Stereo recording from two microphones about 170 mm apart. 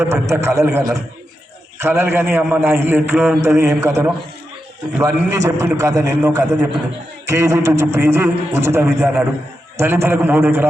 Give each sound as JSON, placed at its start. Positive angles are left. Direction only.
{"t": 0.0, "sound": "a man's voice", "side_deg": -15}